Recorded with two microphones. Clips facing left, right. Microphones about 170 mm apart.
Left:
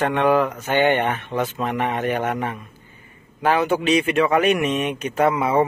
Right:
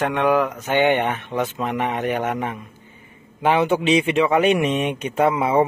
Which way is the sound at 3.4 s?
20° right (ahead or behind).